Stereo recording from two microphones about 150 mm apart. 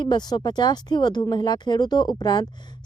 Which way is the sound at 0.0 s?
30° left (ahead or behind).